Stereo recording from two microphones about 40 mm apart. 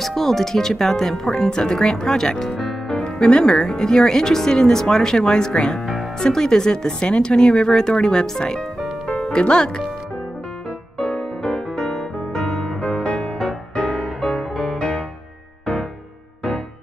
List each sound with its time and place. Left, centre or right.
0.0 s speech: centre
3.0 s speech: left
11.0 s music: centre
12.8 s music: left
13.8 s music: centre